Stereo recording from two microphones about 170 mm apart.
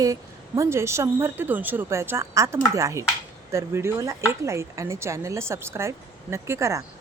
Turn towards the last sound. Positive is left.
turn(degrees=-15)  # may be behind; listen again after turning